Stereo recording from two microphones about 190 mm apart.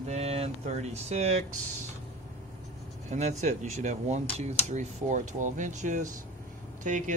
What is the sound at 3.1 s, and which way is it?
Speech, 35° right (ahead or behind).